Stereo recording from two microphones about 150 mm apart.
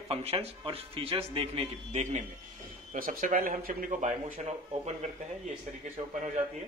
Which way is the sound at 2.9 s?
65° right (ahead or behind).